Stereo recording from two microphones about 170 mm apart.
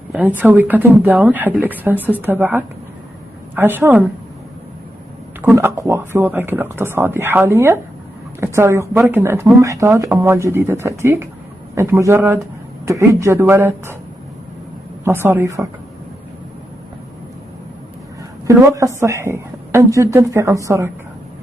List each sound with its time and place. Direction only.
0.1 s speech: 10° right (ahead or behind)
5.4 s speech: 15° right (ahead or behind)
15.0 s speech: 15° right (ahead or behind)
18.5 s speech: 15° right (ahead or behind)